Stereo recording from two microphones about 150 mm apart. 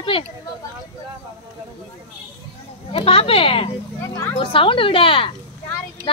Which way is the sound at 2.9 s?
40° left (ahead or behind).